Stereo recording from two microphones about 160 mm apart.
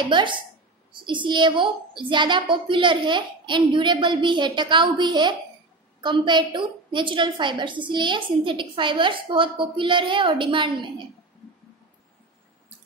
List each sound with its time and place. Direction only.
0.1 s a woman's voice: 30° right (ahead or behind)